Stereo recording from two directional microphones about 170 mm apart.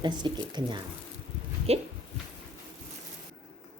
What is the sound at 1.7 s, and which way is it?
Speech, 35° right (ahead or behind).